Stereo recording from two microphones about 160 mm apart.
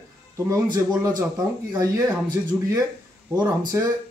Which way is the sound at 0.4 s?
20° right (ahead or behind).